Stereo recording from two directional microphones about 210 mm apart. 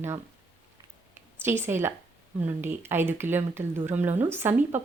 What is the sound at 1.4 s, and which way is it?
Speech, 10° right (ahead or behind).